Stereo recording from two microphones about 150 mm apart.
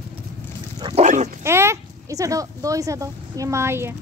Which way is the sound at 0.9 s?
50° right (ahead or behind).